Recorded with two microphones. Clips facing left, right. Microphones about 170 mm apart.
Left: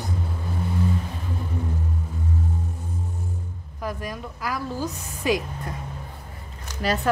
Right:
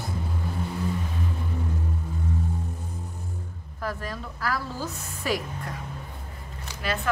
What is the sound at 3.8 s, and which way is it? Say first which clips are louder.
A woman's voice: left 2 dB; 15° left (ahead or behind).